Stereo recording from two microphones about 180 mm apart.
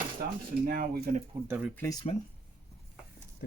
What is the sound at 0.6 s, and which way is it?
Speech, 50° right (ahead or behind).